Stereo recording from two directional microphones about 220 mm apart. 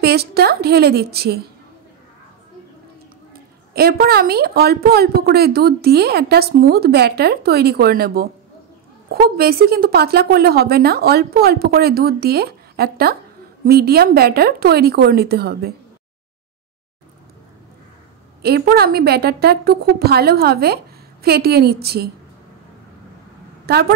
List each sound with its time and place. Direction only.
0.0 s a woman's voice: 45° right (ahead or behind)
3.7 s a woman's voice: 45° right (ahead or behind)
18.4 s a woman's voice: 45° right (ahead or behind)
23.6 s a woman's voice: 45° right (ahead or behind)